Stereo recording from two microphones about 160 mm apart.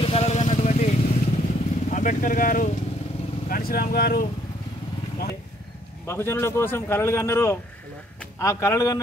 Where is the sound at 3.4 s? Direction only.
70° left (ahead or behind).